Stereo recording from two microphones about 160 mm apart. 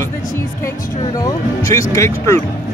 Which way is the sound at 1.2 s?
20° left (ahead or behind).